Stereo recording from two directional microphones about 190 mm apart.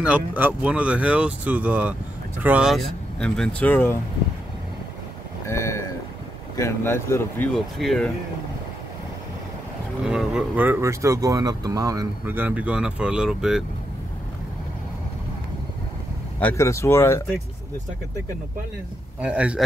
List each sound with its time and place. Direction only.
0.0 s speech: 10° right (ahead or behind); by 4.0 s 10° left (ahead or behind)
5.5 s boat: 15° left (ahead or behind)
6.5 s speech: 15° left (ahead or behind)
7.5 s speech: centre (ahead or behind)
10.0 s speech: 5° right (ahead or behind)
16.3 s speech: 10° left (ahead or behind)
19.2 s speech: 5° right (ahead or behind)